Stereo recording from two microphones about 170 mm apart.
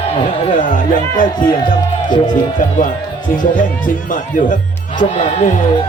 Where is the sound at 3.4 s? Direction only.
50° left (ahead or behind).